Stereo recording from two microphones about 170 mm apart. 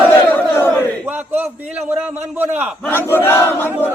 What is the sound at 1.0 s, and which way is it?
A man's voice, 10° right (ahead or behind).